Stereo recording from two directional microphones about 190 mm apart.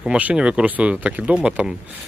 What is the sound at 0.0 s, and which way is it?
Speech, 5° right (ahead or behind).